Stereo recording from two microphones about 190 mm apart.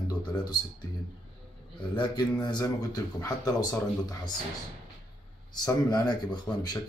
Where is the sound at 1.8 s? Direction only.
25° left (ahead or behind).